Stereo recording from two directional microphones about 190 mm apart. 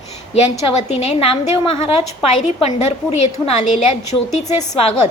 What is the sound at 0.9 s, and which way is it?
A woman's voice, 30° left (ahead or behind).